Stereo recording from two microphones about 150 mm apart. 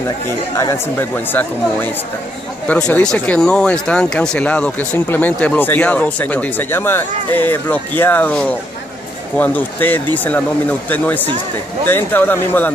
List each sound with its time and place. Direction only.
0.6 s speech: 20° left (ahead or behind)
1.1 s speech: 10° left (ahead or behind)